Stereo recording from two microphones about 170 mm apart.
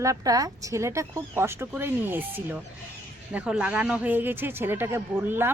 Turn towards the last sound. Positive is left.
turn(degrees=-10)  # may be behind; listen again after turning